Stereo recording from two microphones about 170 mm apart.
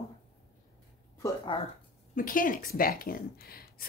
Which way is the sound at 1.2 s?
30° left (ahead or behind).